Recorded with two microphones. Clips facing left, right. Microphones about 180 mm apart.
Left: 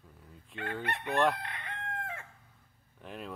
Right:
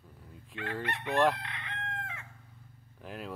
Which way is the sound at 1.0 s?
Centre (ahead or behind).